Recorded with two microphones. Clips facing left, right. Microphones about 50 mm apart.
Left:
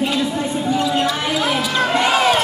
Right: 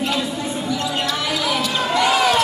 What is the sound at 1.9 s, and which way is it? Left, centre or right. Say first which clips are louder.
Basketball bounce: even; left.